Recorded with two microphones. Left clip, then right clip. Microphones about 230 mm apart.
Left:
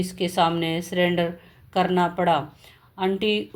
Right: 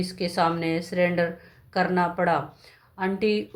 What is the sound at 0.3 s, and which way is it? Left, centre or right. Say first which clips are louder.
Speech: left 2 dB; left.